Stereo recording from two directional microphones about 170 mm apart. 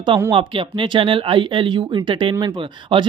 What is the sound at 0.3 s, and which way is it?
Speech, 30° right (ahead or behind).